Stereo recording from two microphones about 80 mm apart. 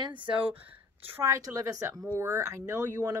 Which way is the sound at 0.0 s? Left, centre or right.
Right.